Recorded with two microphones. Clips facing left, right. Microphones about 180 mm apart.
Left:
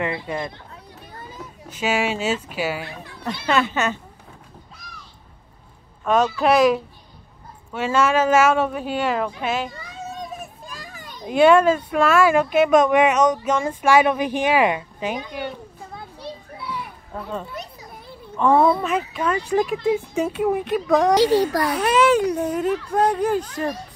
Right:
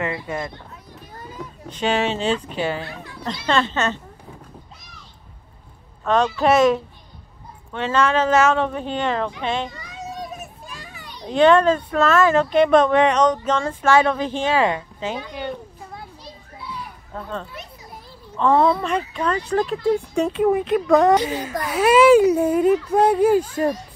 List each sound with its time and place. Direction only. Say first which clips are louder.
1.7 s speech: right 1 dB; 5° left (ahead or behind)
6.0 s speech: even; 5° left (ahead or behind)
10.7 s children playing: left 1 dB; 40° left (ahead or behind)
11.3 s speech: even; 10° left (ahead or behind)
16.2 s children playing: left 5 dB; 70° left (ahead or behind)
17.1 s speech: left 1 dB; 10° left (ahead or behind)
21.2 s a child's voice: left 8 dB; 85° left
21.6 s speech: right 4 dB; 5° right (ahead or behind)